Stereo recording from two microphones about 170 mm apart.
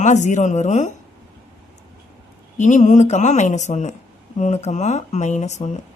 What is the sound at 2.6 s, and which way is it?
Speech, 45° left (ahead or behind).